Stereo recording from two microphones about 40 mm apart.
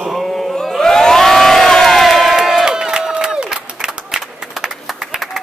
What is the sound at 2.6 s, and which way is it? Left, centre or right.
Crowd, centre.